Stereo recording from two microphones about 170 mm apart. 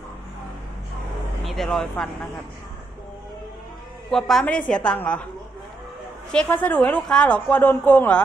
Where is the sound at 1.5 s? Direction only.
Centre (ahead or behind).